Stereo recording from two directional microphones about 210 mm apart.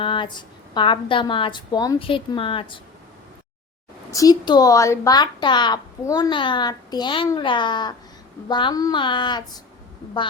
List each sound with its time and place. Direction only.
0.0 s a woman's voice: 25° left (ahead or behind)
4.1 s a woman's voice: 15° left (ahead or behind)